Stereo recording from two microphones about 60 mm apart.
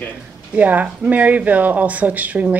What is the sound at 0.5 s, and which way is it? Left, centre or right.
Speech, right.